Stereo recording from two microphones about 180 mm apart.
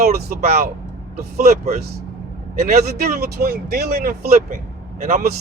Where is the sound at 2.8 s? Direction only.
60° right (ahead or behind).